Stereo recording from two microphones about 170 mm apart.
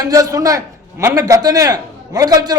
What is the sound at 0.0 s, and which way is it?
A man's voice, 20° right (ahead or behind).